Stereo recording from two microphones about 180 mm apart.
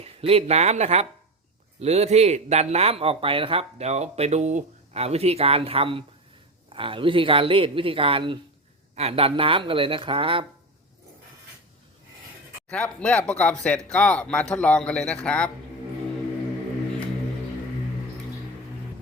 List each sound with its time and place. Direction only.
0.0 s speech: 30° right (ahead or behind)
12.7 s a man's voice: 5° left (ahead or behind)